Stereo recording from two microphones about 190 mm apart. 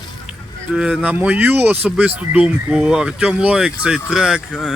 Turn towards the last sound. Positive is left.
turn(degrees=0)  # may be behind; listen again after turning